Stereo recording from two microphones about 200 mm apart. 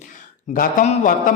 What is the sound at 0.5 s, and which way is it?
Speech, 45° left (ahead or behind).